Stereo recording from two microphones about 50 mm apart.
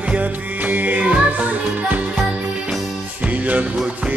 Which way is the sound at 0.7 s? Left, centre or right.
Right.